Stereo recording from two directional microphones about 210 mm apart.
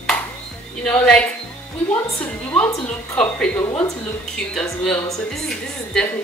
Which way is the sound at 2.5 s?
5° left (ahead or behind).